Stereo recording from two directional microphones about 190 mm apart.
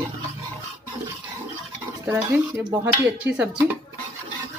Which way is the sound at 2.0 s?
15° right (ahead or behind).